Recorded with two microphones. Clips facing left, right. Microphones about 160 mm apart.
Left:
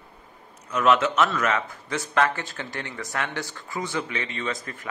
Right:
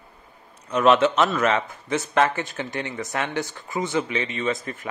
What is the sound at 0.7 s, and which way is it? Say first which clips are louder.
A man's voice: right 3 dB; 30° right (ahead or behind).